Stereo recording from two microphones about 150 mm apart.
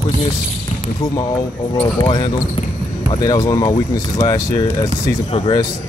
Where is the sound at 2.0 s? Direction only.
35° left (ahead or behind).